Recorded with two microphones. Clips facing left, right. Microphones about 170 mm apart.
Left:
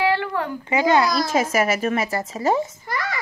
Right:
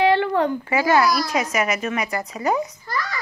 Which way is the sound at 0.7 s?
20° left (ahead or behind).